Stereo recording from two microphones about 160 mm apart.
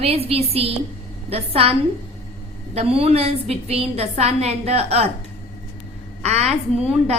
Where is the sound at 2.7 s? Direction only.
40° right (ahead or behind).